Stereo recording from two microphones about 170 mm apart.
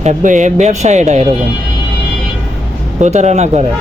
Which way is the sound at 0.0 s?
45° right (ahead or behind).